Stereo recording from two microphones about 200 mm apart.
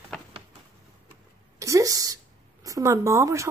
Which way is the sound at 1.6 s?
15° right (ahead or behind).